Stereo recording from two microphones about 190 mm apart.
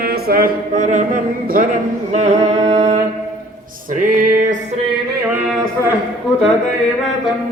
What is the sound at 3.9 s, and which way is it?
Music, 45° right (ahead or behind).